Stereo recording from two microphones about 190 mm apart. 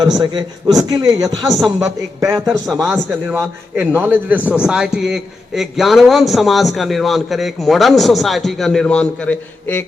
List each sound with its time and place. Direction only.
0.0 s a man's voice: 20° right (ahead or behind)
1.5 s a man's voice: centre (ahead or behind)
2.2 s a man's voice: 20° right (ahead or behind)
2.8 s a man's voice: centre (ahead or behind)
3.8 s a man's voice: 10° right (ahead or behind); by 9.8 s 10° left (ahead or behind)